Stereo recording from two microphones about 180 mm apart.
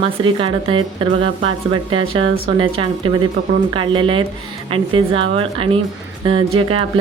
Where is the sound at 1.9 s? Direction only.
30° right (ahead or behind).